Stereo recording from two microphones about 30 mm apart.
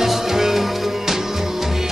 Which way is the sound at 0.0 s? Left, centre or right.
Centre.